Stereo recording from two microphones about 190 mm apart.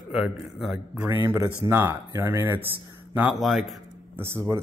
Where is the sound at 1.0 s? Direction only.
10° right (ahead or behind).